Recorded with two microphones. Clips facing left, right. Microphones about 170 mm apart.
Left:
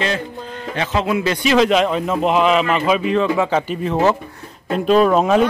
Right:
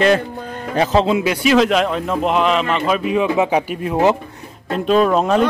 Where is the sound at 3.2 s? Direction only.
10° right (ahead or behind).